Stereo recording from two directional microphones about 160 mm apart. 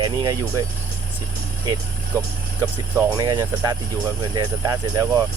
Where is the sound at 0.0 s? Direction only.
25° right (ahead or behind).